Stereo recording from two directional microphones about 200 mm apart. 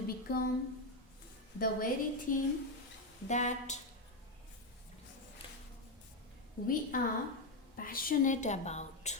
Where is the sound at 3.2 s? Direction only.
35° left (ahead or behind).